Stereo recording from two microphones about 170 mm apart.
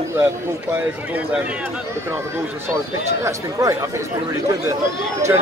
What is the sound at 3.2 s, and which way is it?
Speech, 20° right (ahead or behind).